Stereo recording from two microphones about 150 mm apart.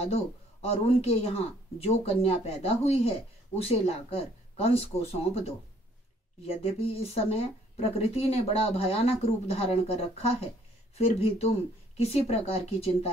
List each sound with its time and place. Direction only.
0.0 s speech: 40° left (ahead or behind)